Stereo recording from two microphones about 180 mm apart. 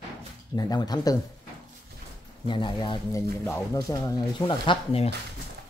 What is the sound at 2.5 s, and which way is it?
Speech, 25° left (ahead or behind).